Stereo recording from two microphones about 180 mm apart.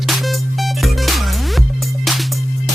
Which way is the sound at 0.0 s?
Centre (ahead or behind).